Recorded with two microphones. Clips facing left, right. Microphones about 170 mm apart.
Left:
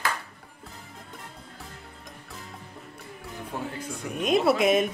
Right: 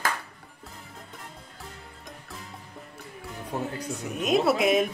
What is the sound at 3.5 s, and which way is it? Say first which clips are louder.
Speech: right 3 dB; 20° right (ahead or behind).